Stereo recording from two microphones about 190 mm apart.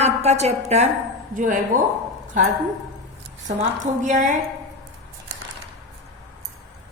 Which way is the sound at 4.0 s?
40° right (ahead or behind).